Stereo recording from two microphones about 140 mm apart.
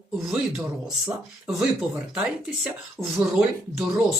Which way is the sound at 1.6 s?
5° right (ahead or behind).